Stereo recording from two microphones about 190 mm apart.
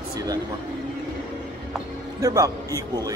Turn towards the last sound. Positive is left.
turn(degrees=-20)  # may be behind; listen again after turning